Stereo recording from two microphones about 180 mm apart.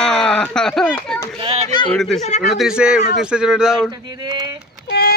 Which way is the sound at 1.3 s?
30° right (ahead or behind).